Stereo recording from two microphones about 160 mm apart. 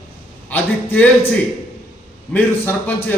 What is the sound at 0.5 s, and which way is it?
Speech, 10° left (ahead or behind).